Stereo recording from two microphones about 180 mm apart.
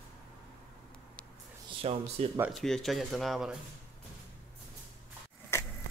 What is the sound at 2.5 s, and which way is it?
Speech, centre (ahead or behind).